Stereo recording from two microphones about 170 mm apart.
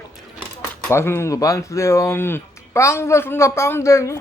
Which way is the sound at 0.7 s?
15° left (ahead or behind).